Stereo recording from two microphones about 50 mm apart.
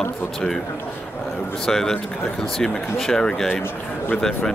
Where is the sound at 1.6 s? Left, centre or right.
Centre.